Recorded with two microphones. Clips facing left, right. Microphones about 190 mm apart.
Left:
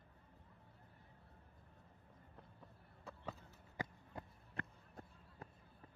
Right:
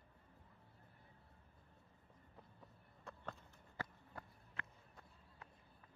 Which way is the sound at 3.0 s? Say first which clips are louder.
Left 2 dB; 5° left (ahead or behind).